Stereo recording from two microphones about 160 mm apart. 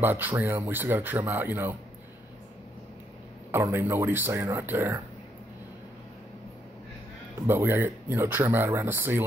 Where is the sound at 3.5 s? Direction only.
15° right (ahead or behind).